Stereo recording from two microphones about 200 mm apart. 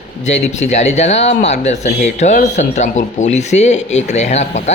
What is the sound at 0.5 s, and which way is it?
Speech, 35° left (ahead or behind).